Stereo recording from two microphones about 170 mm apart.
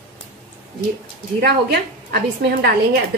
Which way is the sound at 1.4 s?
65° right (ahead or behind).